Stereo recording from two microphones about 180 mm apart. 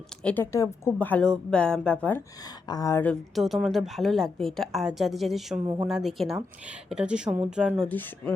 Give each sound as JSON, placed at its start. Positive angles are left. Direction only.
{"t": 0.2, "sound": "speech", "side_deg": 5}
{"t": 2.6, "sound": "a woman's voice", "side_deg": 20}
{"t": 5.6, "sound": "speech", "side_deg": -15}
{"t": 5.9, "sound": "a woman's voice", "side_deg": 0}
{"t": 7.9, "sound": "speech", "side_deg": 10}